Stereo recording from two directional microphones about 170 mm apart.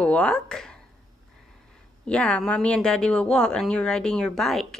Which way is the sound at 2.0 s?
5° left (ahead or behind).